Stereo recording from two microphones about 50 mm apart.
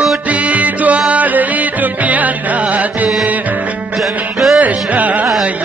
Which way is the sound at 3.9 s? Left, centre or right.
Centre.